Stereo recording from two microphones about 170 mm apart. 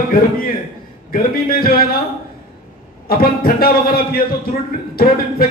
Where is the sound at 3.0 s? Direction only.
65° left (ahead or behind).